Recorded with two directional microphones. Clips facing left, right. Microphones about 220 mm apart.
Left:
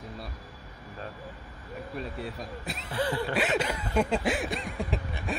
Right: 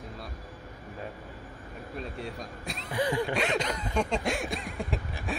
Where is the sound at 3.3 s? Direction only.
5° left (ahead or behind).